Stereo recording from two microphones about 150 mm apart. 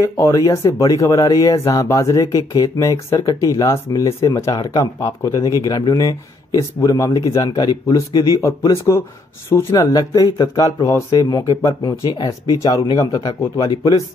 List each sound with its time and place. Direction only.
0.0 s speech: 20° left (ahead or behind)